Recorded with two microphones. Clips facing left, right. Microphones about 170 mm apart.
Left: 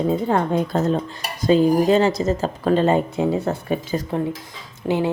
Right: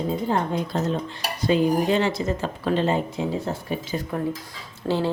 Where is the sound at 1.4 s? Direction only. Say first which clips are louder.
Left 5 dB; 35° left (ahead or behind); by 3.7 s 60° left (ahead or behind).